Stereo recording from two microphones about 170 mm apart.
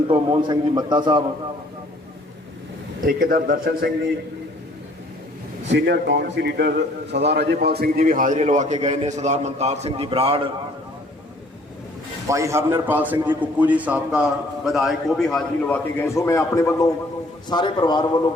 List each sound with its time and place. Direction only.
0.1 s a man's voice: 25° right (ahead or behind)
3.2 s a man's voice: 60° right (ahead or behind)
5.7 s a man's voice: 85° right; by 10.5 s 35° right (ahead or behind)
12.3 s a man's voice: 15° right (ahead or behind); by 18.0 s 25° left (ahead or behind)